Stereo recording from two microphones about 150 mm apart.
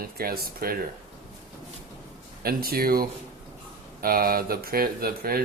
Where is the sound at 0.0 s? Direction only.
85° right.